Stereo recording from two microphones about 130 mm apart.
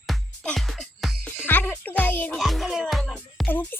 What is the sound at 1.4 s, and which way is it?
Speech, 15° left (ahead or behind).